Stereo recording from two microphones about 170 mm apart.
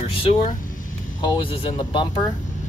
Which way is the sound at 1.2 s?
25° left (ahead or behind).